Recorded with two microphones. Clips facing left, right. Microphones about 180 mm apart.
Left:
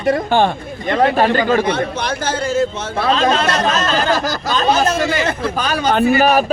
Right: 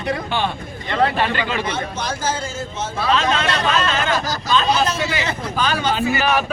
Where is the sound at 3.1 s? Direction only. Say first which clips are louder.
Left 4 dB; 35° left (ahead or behind).